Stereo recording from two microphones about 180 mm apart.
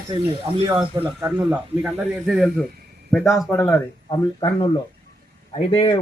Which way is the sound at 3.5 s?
15° left (ahead or behind).